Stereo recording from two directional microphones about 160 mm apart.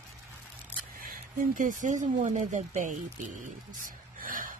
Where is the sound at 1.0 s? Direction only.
60° right (ahead or behind).